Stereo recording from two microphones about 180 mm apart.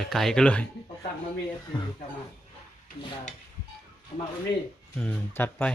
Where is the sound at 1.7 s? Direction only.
25° left (ahead or behind).